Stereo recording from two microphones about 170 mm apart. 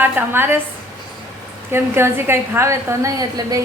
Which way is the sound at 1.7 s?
15° right (ahead or behind).